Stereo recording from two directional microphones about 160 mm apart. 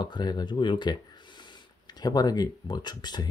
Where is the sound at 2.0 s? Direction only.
25° left (ahead or behind).